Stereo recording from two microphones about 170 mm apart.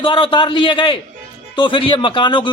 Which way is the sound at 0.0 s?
30° left (ahead or behind).